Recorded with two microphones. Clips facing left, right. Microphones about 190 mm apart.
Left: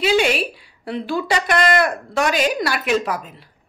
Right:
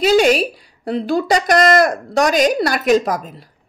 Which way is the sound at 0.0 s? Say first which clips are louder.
Right 5 dB; 40° right (ahead or behind).